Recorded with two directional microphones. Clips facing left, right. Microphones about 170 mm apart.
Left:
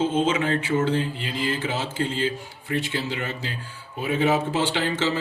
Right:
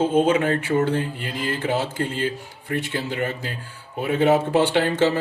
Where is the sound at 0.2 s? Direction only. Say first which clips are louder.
Right 4 dB; 55° right (ahead or behind).